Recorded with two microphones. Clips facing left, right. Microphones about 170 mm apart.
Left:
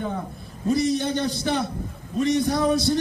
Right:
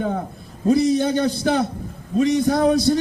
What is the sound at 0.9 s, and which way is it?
A man's voice, 45° right (ahead or behind).